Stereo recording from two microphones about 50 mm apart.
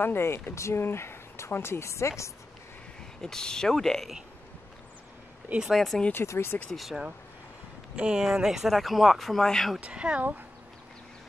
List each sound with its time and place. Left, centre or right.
0.0 s speech: left
3.2 s speech: centre
5.7 s speech: centre
6.2 s speech: left
6.7 s speech: centre
7.9 s speech: centre
9.8 s speech: right